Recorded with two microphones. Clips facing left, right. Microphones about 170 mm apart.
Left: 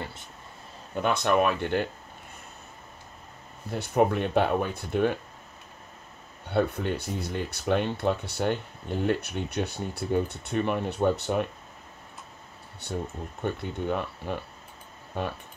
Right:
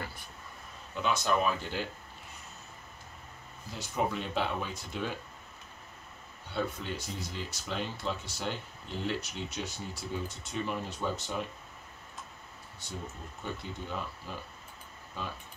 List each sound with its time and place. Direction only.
0.0 s a sound: 25° left (ahead or behind)
0.9 s speech: 60° left (ahead or behind)
3.7 s speech: 60° left (ahead or behind)
6.5 s speech: 60° left (ahead or behind)
12.8 s speech: 60° left (ahead or behind)